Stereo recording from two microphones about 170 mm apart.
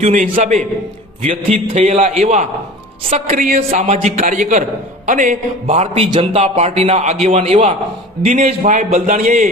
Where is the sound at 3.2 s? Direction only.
55° right (ahead or behind).